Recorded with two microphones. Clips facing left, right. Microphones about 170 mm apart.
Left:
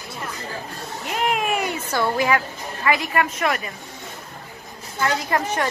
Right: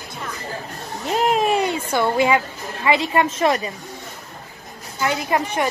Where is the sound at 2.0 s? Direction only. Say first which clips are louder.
Right 3 dB; 25° right (ahead or behind).